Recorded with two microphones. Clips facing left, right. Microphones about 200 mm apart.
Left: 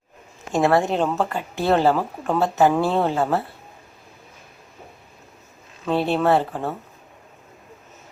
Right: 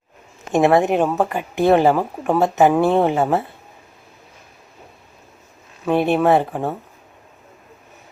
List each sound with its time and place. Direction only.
0.5 s speech: 20° right (ahead or behind)
5.8 s speech: 15° right (ahead or behind)